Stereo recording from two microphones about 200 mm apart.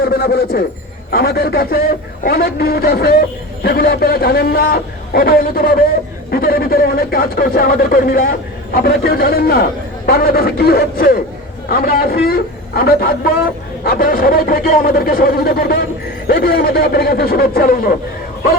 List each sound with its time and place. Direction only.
0.1 s a man's voice: 50° left (ahead or behind)